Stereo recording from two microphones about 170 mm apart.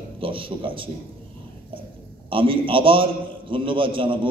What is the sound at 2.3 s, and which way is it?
A man's voice, 30° right (ahead or behind).